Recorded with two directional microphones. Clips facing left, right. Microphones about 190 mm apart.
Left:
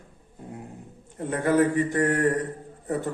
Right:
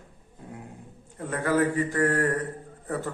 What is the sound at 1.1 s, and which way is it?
A man's voice, 20° left (ahead or behind).